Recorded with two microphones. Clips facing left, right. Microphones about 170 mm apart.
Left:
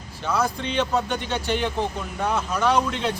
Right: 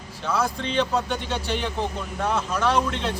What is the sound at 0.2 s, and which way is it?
Speech, centre (ahead or behind).